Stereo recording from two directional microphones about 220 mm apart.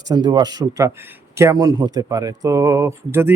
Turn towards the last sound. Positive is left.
turn(degrees=-10)  # may be behind; listen again after turning